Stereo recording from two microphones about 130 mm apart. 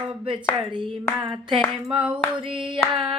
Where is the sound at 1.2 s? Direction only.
35° right (ahead or behind).